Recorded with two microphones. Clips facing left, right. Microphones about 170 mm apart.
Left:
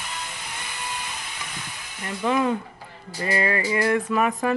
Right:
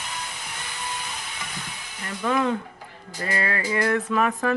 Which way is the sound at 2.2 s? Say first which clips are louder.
Left 1 dB; 10° left (ahead or behind).